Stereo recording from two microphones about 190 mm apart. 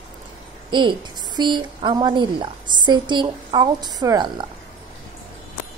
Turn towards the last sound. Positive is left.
turn(degrees=-20)  # may be behind; listen again after turning